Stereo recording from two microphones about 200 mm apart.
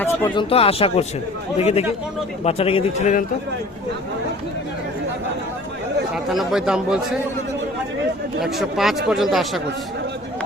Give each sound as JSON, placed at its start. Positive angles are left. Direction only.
{"t": 0.3, "sound": "a man's voice", "side_deg": 25}
{"t": 6.1, "sound": "speech", "side_deg": 0}
{"t": 8.4, "sound": "speech", "side_deg": 0}